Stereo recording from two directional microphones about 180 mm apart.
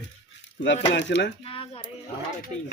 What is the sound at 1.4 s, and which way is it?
Speech, 30° left (ahead or behind).